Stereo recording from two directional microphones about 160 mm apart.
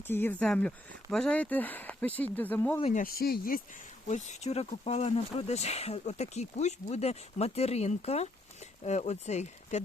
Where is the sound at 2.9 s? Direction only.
65° left (ahead or behind).